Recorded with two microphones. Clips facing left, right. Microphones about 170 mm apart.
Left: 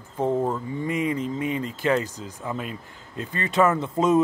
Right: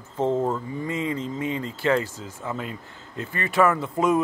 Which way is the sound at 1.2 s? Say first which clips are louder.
Left 1 dB; 20° right (ahead or behind).